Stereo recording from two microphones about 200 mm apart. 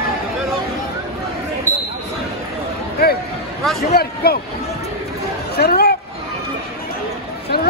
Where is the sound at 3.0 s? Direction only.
50° left (ahead or behind).